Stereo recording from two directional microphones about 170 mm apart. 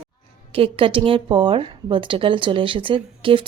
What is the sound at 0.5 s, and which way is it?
A woman's voice, 30° right (ahead or behind).